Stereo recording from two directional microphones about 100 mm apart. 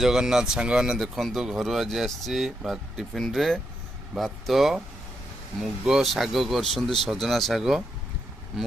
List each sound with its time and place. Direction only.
0.0 s speech: 5° right (ahead or behind)